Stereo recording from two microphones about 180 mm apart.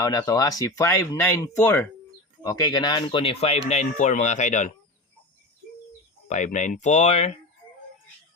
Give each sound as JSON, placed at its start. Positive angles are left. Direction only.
{"t": 0.0, "sound": "speech", "side_deg": 20}
{"t": 2.4, "sound": "speech", "side_deg": 20}
{"t": 6.2, "sound": "speech", "side_deg": 45}